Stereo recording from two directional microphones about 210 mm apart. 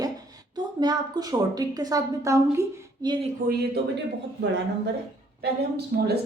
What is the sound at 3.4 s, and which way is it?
Speech, 40° right (ahead or behind).